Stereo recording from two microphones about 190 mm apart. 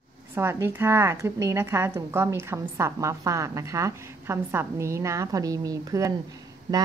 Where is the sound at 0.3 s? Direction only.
15° right (ahead or behind).